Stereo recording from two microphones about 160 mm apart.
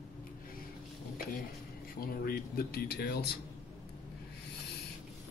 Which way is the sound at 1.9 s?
70° left (ahead or behind).